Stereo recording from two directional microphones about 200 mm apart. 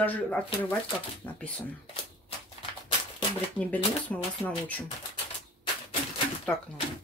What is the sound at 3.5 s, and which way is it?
Speech, 5° left (ahead or behind).